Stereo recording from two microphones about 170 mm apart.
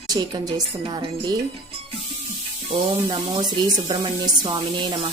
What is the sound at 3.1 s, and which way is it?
A woman's voice, 25° right (ahead or behind).